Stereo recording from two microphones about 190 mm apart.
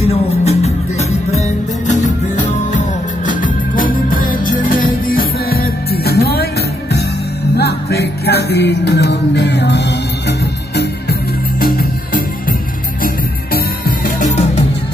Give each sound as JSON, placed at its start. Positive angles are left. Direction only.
{"t": 0.0, "sound": "music", "side_deg": 35}
{"t": 1.9, "sound": "music", "side_deg": 40}
{"t": 7.5, "sound": "music", "side_deg": 60}
{"t": 11.6, "sound": "music", "side_deg": 50}
{"t": 14.0, "sound": "music", "side_deg": 40}